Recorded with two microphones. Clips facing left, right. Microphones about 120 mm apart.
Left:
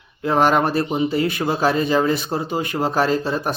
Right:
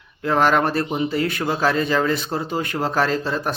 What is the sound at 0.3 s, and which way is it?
Speech, 15° left (ahead or behind).